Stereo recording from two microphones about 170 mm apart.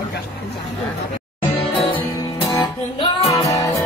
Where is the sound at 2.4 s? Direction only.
25° left (ahead or behind).